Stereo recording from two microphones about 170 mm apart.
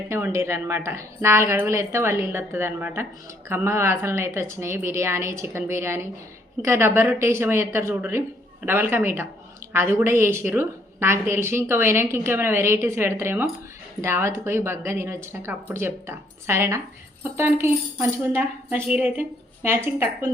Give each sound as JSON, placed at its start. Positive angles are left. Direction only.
{"t": 0.1, "sound": "a woman's voice", "side_deg": -15}